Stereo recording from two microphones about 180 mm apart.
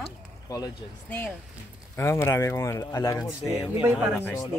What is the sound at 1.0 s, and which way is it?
Speech, 10° left (ahead or behind).